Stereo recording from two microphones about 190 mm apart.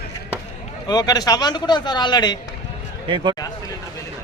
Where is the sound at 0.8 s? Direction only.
20° left (ahead or behind).